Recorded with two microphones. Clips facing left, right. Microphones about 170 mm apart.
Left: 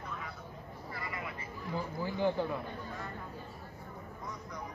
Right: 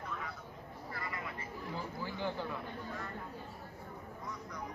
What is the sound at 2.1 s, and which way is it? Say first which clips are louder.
Speech: left 8 dB; 15° left (ahead or behind).